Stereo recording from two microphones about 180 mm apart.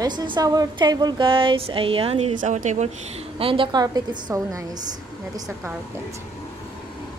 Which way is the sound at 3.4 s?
30° right (ahead or behind).